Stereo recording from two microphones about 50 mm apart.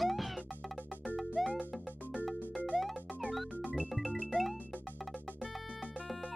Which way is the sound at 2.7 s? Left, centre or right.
Centre.